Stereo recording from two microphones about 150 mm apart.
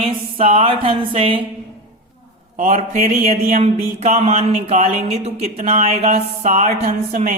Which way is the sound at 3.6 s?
45° right (ahead or behind).